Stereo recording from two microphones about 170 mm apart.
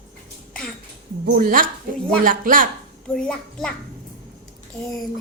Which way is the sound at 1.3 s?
55° right (ahead or behind).